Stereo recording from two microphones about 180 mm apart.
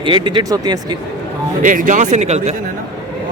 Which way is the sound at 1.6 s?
45° right (ahead or behind).